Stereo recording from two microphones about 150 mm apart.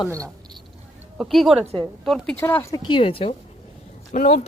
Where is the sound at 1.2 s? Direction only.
Centre (ahead or behind).